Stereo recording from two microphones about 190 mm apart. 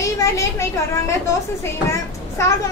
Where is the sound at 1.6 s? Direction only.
15° left (ahead or behind).